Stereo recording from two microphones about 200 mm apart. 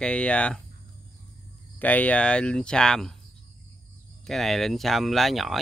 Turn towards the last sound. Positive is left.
turn(degrees=0)  # may be behind; listen again after turning